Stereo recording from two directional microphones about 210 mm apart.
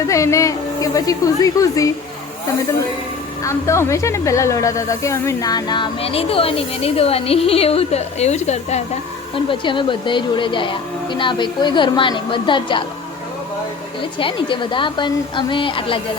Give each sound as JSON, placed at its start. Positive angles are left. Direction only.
{"t": 0.1, "sound": "a woman's voice", "side_deg": 15}
{"t": 3.4, "sound": "speech", "side_deg": 15}
{"t": 14.2, "sound": "speech", "side_deg": 25}